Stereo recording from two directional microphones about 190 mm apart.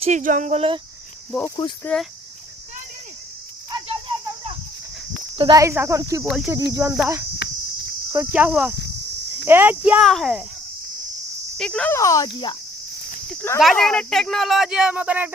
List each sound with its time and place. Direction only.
0.0 s speech: 40° right (ahead or behind)
1.5 s speech: 25° left (ahead or behind)
1.8 s speech: 5° left (ahead or behind)
3.7 s cricket: 20° right (ahead or behind)
5.4 s speech: 20° right (ahead or behind)
6.2 s speech: centre (ahead or behind)
6.7 s speech: 15° right (ahead or behind)
7.4 s cricket: 60° left (ahead or behind)
8.1 s speech: 10° right (ahead or behind)
11.5 s speech: 5° left (ahead or behind)
13.3 s speech: 10° left (ahead or behind)
13.6 s speech: centre (ahead or behind)